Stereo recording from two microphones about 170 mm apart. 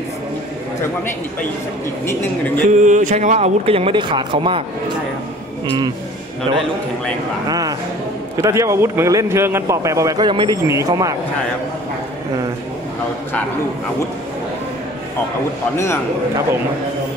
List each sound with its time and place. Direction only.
2.0 s speech: 10° left (ahead or behind)
2.8 s speech: 45° right (ahead or behind); by 4.6 s 30° right (ahead or behind)
7.4 s a man's voice: 20° right (ahead or behind)
15.7 s speech: 15° left (ahead or behind)